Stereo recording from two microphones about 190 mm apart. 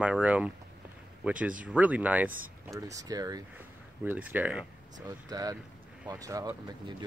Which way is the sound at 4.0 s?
10° right (ahead or behind).